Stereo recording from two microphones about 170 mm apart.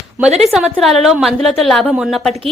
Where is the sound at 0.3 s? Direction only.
40° right (ahead or behind).